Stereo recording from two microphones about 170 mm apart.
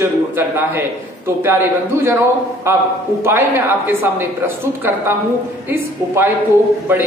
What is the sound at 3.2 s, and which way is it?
A man's voice, 15° right (ahead or behind).